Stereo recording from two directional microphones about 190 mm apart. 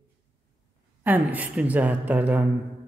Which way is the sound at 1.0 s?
10° right (ahead or behind).